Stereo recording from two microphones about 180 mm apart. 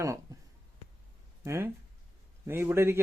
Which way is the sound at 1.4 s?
15° right (ahead or behind).